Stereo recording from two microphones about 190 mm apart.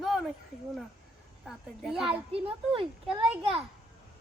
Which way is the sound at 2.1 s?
30° right (ahead or behind).